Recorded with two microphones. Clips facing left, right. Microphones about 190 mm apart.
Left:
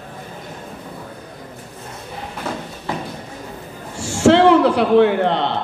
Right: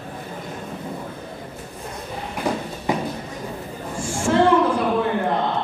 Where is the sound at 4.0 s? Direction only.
75° left (ahead or behind).